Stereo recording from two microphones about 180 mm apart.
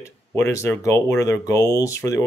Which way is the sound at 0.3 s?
15° left (ahead or behind).